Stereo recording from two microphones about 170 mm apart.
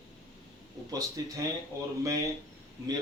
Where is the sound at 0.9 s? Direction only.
20° right (ahead or behind).